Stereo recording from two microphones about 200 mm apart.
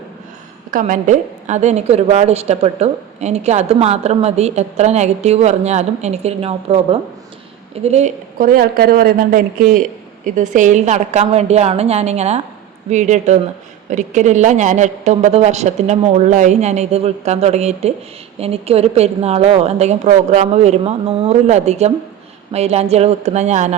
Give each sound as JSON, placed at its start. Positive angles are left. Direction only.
{"t": 0.7, "sound": "a woman's voice", "side_deg": -40}